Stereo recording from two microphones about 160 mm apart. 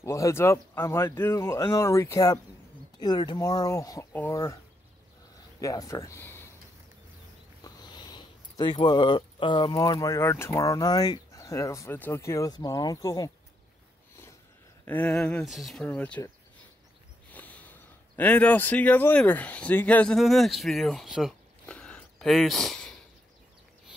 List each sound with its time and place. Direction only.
0.0 s speech: 20° left (ahead or behind)
5.6 s speech: 20° left (ahead or behind)
7.6 s speech: 25° left (ahead or behind)
14.9 s speech: 10° left (ahead or behind)
17.3 s speech: 10° left (ahead or behind)